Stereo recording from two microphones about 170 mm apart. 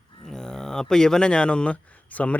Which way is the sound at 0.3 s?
5° left (ahead or behind).